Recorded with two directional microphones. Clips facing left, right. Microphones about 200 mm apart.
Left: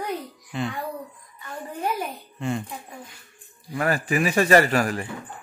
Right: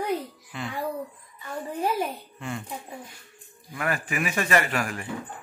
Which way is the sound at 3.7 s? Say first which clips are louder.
Left 5 dB; 35° left (ahead or behind).